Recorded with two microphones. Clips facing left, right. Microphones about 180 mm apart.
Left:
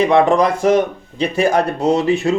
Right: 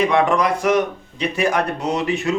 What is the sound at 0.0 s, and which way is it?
A man's voice, 30° left (ahead or behind).